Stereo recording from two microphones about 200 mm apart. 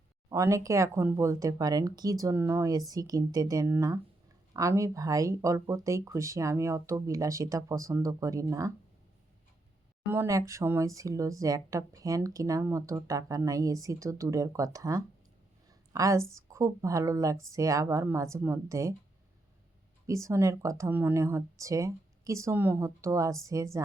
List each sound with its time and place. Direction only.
0.3 s speech: 15° right (ahead or behind)
10.1 s a woman's voice: 15° right (ahead or behind)
20.1 s speech: 15° right (ahead or behind)